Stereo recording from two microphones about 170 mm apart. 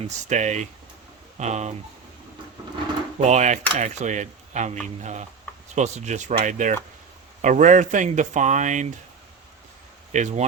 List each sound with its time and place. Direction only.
0.3 s speech: 45° right (ahead or behind)
3.2 s speech: 45° right (ahead or behind)
10.1 s speech: 45° right (ahead or behind)